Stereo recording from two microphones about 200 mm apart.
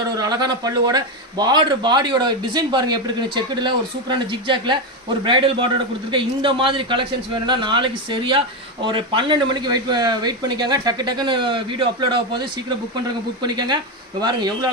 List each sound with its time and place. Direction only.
0.2 s a man's voice: 20° right (ahead or behind)